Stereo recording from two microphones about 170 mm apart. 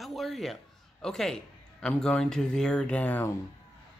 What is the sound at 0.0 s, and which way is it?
Speech, centre (ahead or behind).